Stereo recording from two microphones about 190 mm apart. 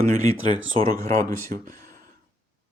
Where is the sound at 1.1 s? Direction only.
45° right (ahead or behind).